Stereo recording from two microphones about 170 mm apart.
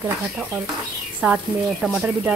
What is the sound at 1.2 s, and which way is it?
Speech, 5° right (ahead or behind).